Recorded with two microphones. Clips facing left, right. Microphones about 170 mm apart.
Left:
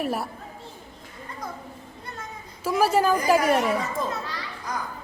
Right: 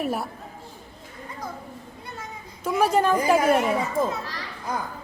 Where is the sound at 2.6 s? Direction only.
5° left (ahead or behind).